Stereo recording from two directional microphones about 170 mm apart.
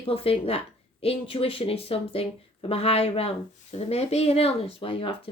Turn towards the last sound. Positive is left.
turn(degrees=30)  # may be behind; listen again after turning